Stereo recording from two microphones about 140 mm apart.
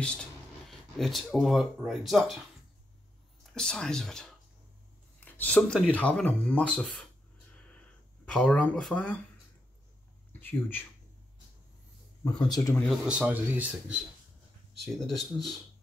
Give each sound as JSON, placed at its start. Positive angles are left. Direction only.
{"t": 0.0, "sound": "speech", "side_deg": 5}
{"t": 3.5, "sound": "speech", "side_deg": 5}
{"t": 8.3, "sound": "speech", "side_deg": 10}
{"t": 10.4, "sound": "speech", "side_deg": 15}
{"t": 12.4, "sound": "speech", "side_deg": 30}
{"t": 12.7, "sound": "speech", "side_deg": 5}
{"t": 13.0, "sound": "speech", "side_deg": -10}
{"t": 15.0, "sound": "speech", "side_deg": 0}